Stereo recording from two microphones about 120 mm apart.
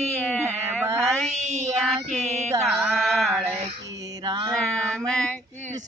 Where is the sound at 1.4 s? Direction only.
70° right (ahead or behind).